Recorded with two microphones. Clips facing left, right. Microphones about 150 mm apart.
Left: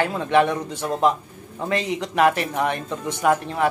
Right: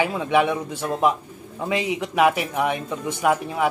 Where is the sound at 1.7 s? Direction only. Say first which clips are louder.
Even; 10° right (ahead or behind).